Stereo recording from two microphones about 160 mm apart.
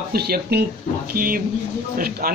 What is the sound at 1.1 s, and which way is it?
Speech, 65° right (ahead or behind).